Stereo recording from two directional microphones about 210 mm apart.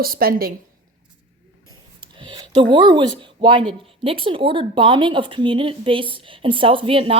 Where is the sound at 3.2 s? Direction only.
25° right (ahead or behind).